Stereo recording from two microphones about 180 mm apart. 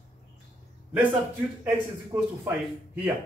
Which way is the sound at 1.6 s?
10° right (ahead or behind).